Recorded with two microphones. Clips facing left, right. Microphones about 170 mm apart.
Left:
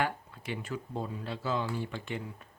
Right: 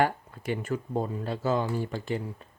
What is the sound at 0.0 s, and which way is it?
Speech, 45° right (ahead or behind).